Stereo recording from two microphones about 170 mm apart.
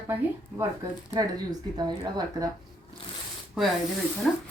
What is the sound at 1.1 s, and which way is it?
A woman's voice, 25° right (ahead or behind).